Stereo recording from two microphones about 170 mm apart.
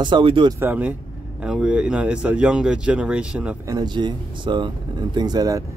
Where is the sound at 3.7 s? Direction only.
25° right (ahead or behind).